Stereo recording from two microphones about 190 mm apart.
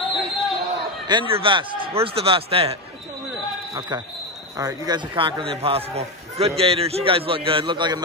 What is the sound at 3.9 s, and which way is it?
Speech, 20° right (ahead or behind).